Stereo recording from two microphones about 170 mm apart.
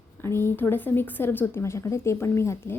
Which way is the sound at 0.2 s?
15° left (ahead or behind).